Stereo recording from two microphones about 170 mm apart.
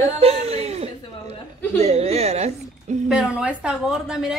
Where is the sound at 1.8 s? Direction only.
40° right (ahead or behind).